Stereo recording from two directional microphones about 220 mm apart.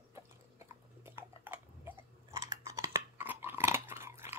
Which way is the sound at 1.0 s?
10° right (ahead or behind).